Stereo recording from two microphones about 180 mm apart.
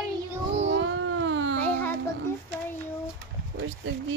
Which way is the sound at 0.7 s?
90° right.